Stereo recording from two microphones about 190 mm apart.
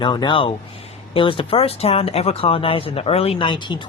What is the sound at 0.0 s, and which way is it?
Speech, 25° left (ahead or behind).